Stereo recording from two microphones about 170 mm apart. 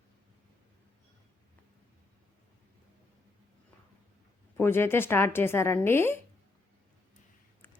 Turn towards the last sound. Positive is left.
turn(degrees=15)  # may be behind; listen again after turning